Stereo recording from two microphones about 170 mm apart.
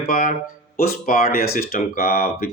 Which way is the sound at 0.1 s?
55° left (ahead or behind).